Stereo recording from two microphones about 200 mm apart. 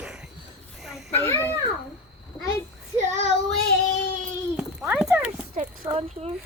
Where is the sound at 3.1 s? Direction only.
35° right (ahead or behind).